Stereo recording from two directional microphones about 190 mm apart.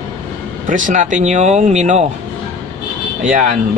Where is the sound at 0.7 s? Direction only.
40° right (ahead or behind).